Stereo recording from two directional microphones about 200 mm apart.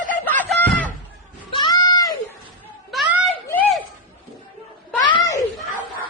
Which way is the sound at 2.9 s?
Centre (ahead or behind).